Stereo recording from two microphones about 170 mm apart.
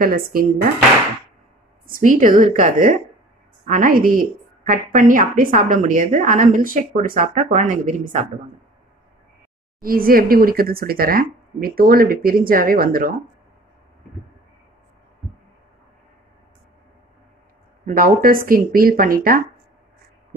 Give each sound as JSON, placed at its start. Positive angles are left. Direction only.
{"t": 0.0, "sound": "speech", "side_deg": -60}
{"t": 1.9, "sound": "a woman's voice", "side_deg": -50}
{"t": 9.8, "sound": "speech", "side_deg": -60}
{"t": 17.8, "sound": "speech", "side_deg": -55}